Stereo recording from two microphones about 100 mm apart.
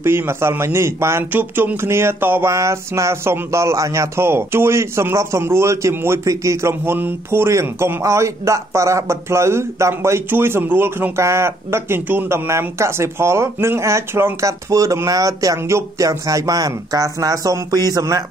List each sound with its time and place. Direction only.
0.0 s a man's voice: 25° right (ahead or behind)